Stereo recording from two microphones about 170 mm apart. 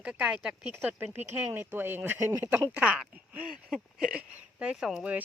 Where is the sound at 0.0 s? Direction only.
5° right (ahead or behind).